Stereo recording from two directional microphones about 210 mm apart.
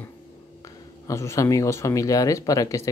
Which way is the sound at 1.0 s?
15° left (ahead or behind).